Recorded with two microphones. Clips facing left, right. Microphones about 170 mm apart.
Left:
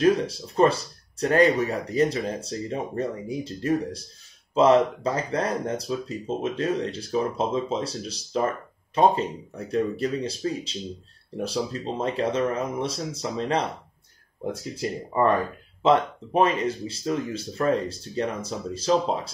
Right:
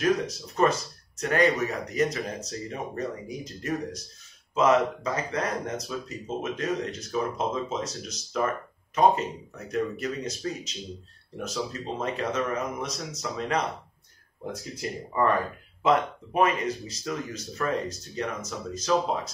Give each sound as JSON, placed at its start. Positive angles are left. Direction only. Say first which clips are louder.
{"t": 0.0, "sound": "speech", "louder": "left 4 dB", "side_deg": 30}
{"t": 15.8, "sound": "speech", "louder": "left 3 dB", "side_deg": 25}